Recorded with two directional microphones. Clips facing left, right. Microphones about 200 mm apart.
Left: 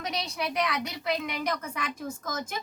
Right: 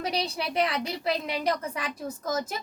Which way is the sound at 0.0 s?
35° right (ahead or behind).